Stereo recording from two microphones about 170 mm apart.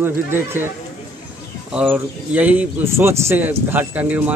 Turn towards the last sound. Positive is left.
turn(degrees=-10)  # may be behind; listen again after turning